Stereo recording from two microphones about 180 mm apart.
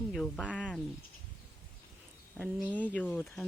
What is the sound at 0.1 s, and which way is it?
Speech, centre (ahead or behind).